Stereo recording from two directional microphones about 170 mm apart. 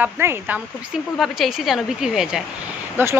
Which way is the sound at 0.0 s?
10° right (ahead or behind).